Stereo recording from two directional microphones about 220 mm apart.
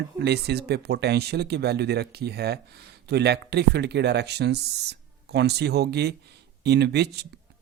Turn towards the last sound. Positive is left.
turn(degrees=-50)  # may be behind; listen again after turning